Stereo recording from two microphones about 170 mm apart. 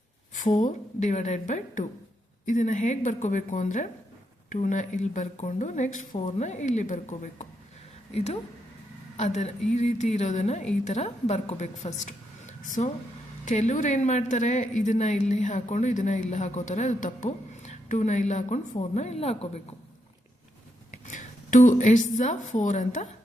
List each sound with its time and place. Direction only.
0.3 s a woman's voice: 45° left (ahead or behind)
21.1 s a sound: 45° left (ahead or behind)
22.2 s a woman's voice: 45° left (ahead or behind)